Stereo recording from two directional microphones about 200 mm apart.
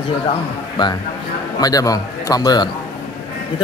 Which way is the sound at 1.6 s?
20° left (ahead or behind).